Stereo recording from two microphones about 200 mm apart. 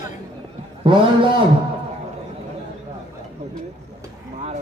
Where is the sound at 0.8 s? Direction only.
25° right (ahead or behind).